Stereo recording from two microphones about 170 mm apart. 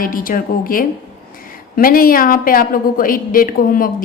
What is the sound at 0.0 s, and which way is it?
A woman's voice, 55° left (ahead or behind).